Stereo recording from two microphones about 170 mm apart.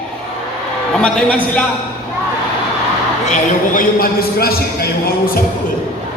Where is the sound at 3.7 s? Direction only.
60° left (ahead or behind).